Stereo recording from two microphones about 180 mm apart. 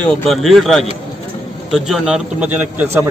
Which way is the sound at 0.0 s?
5° left (ahead or behind).